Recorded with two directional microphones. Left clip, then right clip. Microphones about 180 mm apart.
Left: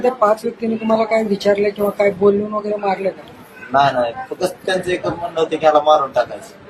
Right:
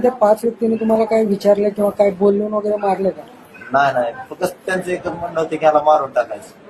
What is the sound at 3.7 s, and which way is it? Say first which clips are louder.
A man's voice: left 1 dB; centre (ahead or behind).